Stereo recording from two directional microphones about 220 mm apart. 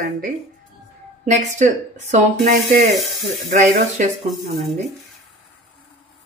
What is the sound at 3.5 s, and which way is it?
Speech, 35° right (ahead or behind).